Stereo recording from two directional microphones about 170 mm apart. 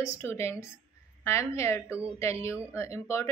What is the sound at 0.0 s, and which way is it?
A woman's voice, 15° left (ahead or behind).